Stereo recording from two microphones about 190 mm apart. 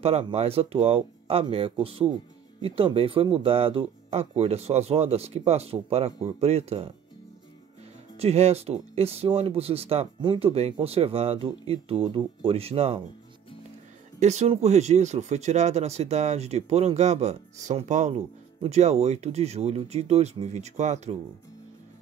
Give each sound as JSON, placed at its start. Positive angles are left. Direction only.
{"t": 0.0, "sound": "speech", "side_deg": -35}
{"t": 8.2, "sound": "speech", "side_deg": -35}
{"t": 14.2, "sound": "speech", "side_deg": -35}